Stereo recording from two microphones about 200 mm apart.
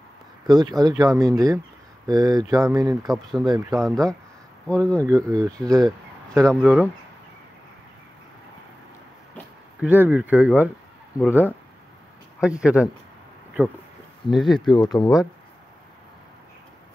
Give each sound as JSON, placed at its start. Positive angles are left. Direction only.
{"t": 0.5, "sound": "speech", "side_deg": -20}
{"t": 3.1, "sound": "speech", "side_deg": 0}
{"t": 5.0, "sound": "speech", "side_deg": -15}
{"t": 5.8, "sound": "a sound", "side_deg": -20}
{"t": 6.4, "sound": "speech", "side_deg": 0}
{"t": 9.8, "sound": "speech", "side_deg": -10}
{"t": 14.3, "sound": "speech", "side_deg": 0}
{"t": 14.8, "sound": "speech", "side_deg": 20}